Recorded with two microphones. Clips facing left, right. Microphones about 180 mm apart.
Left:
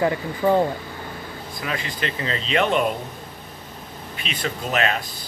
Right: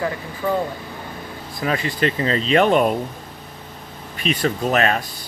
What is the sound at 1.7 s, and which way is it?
Speech, 40° right (ahead or behind).